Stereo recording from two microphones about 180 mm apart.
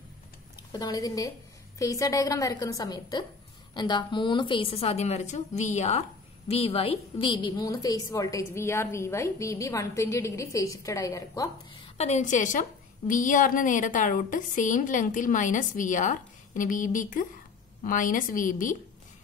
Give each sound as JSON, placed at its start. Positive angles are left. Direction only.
{"t": 0.7, "sound": "a woman's voice", "side_deg": 20}
{"t": 12.0, "sound": "a woman's voice", "side_deg": 40}